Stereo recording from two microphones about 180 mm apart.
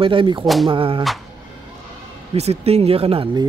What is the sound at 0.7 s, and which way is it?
Speech, 30° right (ahead or behind).